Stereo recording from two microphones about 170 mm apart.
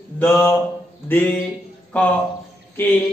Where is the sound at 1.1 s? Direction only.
10° left (ahead or behind).